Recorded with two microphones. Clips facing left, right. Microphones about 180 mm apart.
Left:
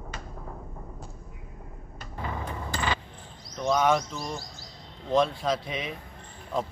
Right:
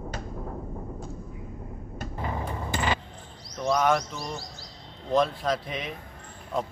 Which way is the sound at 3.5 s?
Centre (ahead or behind).